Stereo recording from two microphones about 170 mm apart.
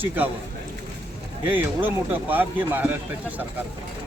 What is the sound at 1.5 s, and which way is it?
A man's voice, 10° right (ahead or behind).